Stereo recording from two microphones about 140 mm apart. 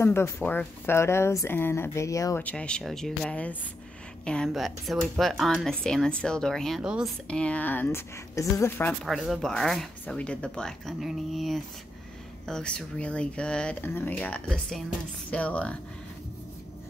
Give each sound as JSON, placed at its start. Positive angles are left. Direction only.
{"t": 0.0, "sound": "speech", "side_deg": 15}
{"t": 2.4, "sound": "speech", "side_deg": 5}
{"t": 7.2, "sound": "speech", "side_deg": 10}
{"t": 9.0, "sound": "speech", "side_deg": 0}